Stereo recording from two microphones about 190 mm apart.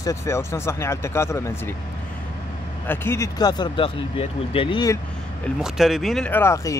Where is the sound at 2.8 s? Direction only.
10° left (ahead or behind).